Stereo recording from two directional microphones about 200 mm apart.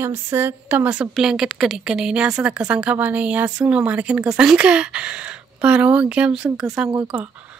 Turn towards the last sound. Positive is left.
turn(degrees=-5)  # may be behind; listen again after turning